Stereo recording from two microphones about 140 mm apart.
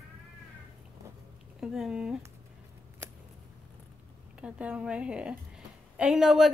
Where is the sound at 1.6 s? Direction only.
5° right (ahead or behind).